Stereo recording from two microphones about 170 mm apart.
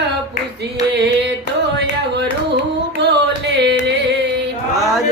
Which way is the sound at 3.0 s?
85° right.